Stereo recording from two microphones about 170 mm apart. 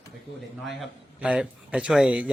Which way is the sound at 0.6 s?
5° right (ahead or behind).